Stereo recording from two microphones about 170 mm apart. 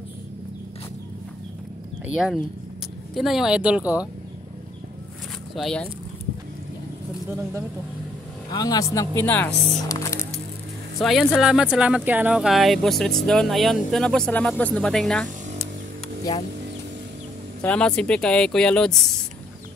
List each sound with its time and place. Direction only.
2.1 s speech: centre (ahead or behind)
5.6 s speech: 5° left (ahead or behind)
8.5 s speech: 25° left (ahead or behind)
11.0 s speech: centre (ahead or behind)
17.6 s speech: 5° left (ahead or behind)